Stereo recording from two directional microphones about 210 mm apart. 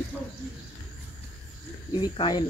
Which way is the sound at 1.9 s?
20° left (ahead or behind).